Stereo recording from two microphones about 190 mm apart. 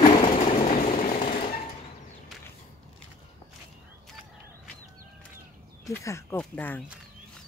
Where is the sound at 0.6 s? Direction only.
45° left (ahead or behind).